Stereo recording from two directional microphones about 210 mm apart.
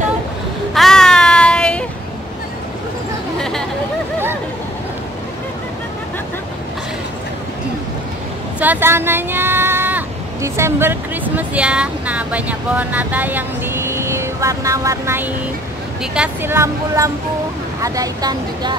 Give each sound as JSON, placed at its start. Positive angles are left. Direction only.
{"t": 0.7, "sound": "a sound", "side_deg": 0}
{"t": 3.3, "sound": "chatter", "side_deg": 0}
{"t": 8.5, "sound": "a woman's voice", "side_deg": -10}